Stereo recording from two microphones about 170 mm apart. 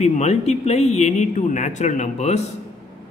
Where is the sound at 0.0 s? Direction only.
40° left (ahead or behind).